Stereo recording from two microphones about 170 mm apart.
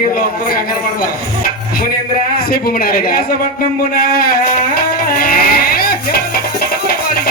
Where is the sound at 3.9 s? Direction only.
60° left (ahead or behind).